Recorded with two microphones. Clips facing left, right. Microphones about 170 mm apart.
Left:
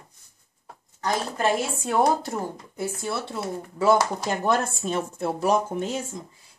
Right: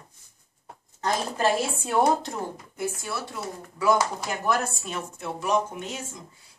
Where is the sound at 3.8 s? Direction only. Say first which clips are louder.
Left 3 dB; 25° left (ahead or behind).